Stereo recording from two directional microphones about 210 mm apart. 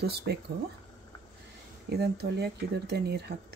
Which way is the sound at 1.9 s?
50° right (ahead or behind).